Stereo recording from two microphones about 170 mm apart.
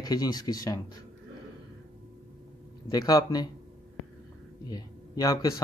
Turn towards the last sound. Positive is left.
turn(degrees=20)  # may be behind; listen again after turning